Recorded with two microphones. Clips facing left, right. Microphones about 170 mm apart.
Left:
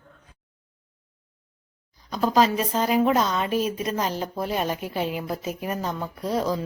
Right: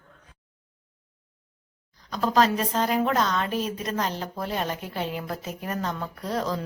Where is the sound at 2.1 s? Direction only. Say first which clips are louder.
Left 2 dB; 5° left (ahead or behind).